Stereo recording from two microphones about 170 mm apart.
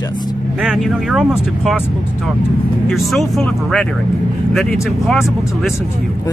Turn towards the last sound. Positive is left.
turn(degrees=0)  # may be behind; listen again after turning